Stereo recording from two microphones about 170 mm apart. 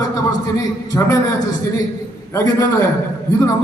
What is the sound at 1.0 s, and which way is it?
Speech, 15° left (ahead or behind).